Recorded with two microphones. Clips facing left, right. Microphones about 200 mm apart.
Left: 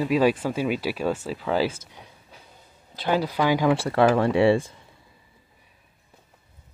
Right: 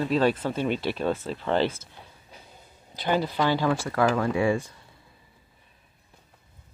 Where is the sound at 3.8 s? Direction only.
30° left (ahead or behind).